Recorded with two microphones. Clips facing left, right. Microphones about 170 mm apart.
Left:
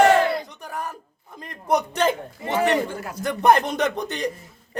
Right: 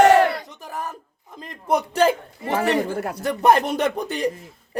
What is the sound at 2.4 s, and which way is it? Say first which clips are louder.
Speech: even; 30° right (ahead or behind).